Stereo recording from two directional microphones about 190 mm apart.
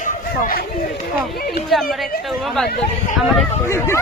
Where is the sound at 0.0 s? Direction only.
45° left (ahead or behind).